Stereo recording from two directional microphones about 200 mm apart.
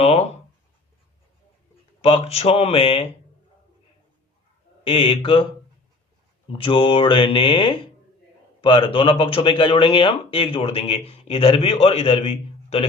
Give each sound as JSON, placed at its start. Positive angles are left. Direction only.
{"t": 2.0, "sound": "speech", "side_deg": 30}
{"t": 4.8, "sound": "speech", "side_deg": 25}
{"t": 6.6, "sound": "speech", "side_deg": 25}